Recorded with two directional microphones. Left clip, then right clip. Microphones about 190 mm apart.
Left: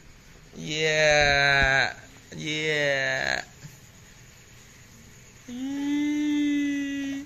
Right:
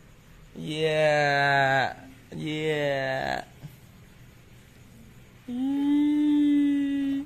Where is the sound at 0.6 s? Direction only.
20° right (ahead or behind).